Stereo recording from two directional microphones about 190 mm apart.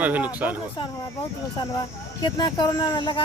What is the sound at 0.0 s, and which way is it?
Speech, 10° right (ahead or behind).